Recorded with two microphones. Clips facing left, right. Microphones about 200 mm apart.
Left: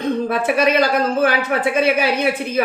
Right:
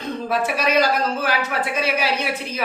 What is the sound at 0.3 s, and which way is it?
Speech, 55° left (ahead or behind).